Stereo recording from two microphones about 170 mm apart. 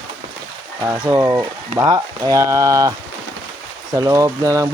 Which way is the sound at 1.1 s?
15° right (ahead or behind).